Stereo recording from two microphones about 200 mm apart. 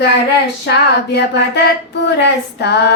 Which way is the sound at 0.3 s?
55° left (ahead or behind).